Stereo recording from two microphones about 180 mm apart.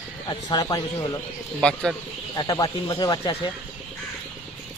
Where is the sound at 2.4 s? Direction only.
20° left (ahead or behind).